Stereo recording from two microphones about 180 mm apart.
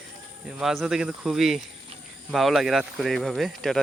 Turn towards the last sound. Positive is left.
turn(degrees=0)  # may be behind; listen again after turning